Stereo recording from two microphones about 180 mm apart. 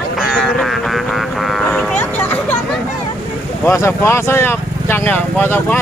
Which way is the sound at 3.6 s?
15° left (ahead or behind).